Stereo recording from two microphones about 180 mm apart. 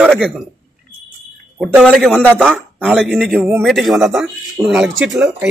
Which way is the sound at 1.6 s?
Centre (ahead or behind).